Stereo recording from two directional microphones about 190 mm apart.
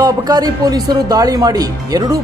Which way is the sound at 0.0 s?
20° right (ahead or behind).